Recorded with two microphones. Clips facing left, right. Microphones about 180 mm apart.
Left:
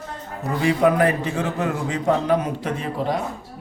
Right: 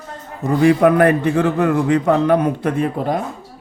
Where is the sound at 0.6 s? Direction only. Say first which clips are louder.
Right 5 dB; 60° right (ahead or behind).